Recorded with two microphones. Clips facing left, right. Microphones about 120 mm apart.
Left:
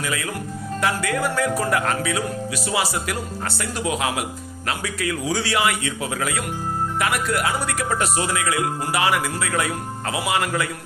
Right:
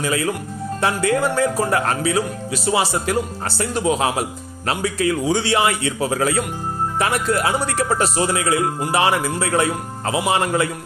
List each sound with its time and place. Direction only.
0.0 s speech: 30° right (ahead or behind)